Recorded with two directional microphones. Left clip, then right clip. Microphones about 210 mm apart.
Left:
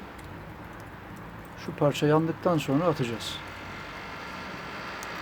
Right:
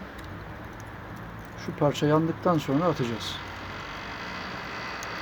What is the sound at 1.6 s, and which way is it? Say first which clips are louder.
Speech: even; 10° left (ahead or behind).